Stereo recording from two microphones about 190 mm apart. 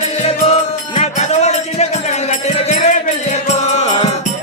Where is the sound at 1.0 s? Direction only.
35° left (ahead or behind).